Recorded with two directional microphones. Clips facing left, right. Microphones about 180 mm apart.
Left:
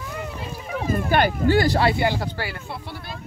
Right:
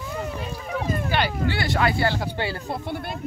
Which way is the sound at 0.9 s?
50° left (ahead or behind).